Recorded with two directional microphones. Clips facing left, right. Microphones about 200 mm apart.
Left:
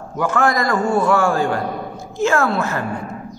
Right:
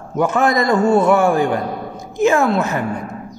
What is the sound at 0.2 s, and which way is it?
A man's voice, 20° right (ahead or behind).